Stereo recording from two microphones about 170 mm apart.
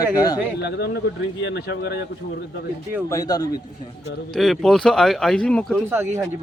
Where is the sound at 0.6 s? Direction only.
80° left.